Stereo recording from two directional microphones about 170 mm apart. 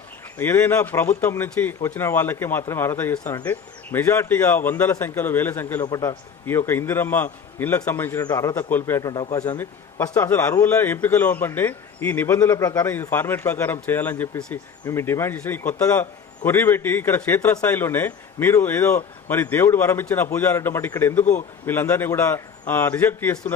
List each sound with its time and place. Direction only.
0.3 s a man's voice: 15° left (ahead or behind)